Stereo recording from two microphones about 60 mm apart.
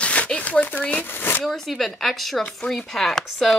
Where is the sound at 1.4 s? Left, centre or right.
Centre.